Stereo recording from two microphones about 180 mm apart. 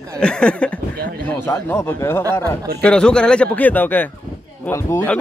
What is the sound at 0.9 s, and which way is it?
Speech, 60° right (ahead or behind).